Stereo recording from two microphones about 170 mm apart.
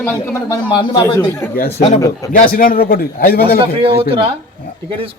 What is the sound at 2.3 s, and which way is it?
A man's voice, 55° left (ahead or behind).